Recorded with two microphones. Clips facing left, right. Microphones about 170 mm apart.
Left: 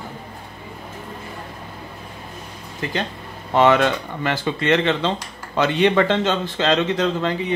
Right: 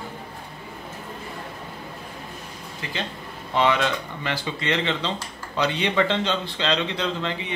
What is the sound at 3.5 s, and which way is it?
Speech, 50° left (ahead or behind).